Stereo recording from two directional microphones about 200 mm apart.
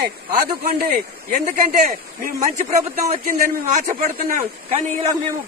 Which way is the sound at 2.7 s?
35° right (ahead or behind).